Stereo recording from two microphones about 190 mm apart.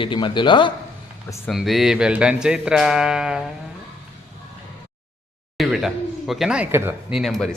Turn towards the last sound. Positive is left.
turn(degrees=0)  # may be behind; listen again after turning